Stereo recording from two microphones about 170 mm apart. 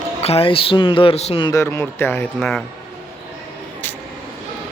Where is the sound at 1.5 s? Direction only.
15° left (ahead or behind).